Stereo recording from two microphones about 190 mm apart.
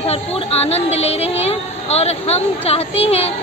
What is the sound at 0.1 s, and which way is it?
Child singing, 35° left (ahead or behind).